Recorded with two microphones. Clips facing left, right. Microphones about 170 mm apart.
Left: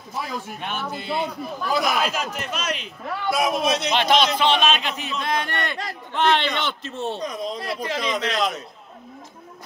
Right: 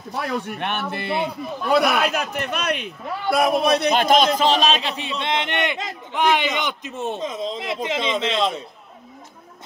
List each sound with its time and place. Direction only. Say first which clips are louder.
0.1 s a man's voice: right 4 dB; 65° right (ahead or behind); by 8.6 s 25° right (ahead or behind)